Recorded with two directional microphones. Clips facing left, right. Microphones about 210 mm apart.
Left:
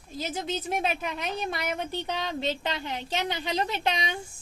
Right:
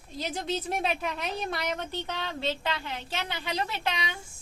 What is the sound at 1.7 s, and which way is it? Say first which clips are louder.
A woman's voice: left 3 dB; 15° left (ahead or behind).